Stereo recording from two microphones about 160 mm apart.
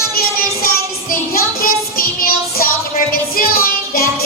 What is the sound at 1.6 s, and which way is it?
Music, 65° left (ahead or behind).